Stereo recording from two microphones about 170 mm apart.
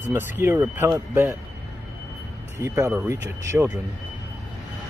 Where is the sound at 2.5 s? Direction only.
15° right (ahead or behind).